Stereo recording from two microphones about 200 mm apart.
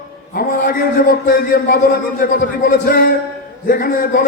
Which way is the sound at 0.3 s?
45° left (ahead or behind).